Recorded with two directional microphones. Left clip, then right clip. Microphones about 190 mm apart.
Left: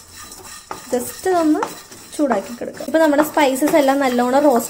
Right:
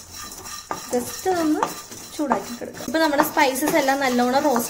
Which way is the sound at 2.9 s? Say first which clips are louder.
Left 5 dB; 40° left (ahead or behind).